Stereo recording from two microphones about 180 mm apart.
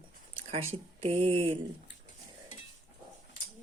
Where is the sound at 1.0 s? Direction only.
30° right (ahead or behind).